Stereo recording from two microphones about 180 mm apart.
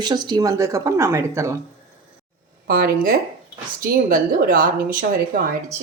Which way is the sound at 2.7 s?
55° right (ahead or behind).